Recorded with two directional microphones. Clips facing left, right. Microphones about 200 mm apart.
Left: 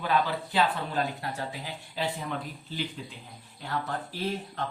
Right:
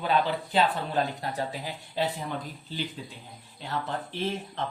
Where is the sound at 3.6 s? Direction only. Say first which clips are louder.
Even; 25° right (ahead or behind).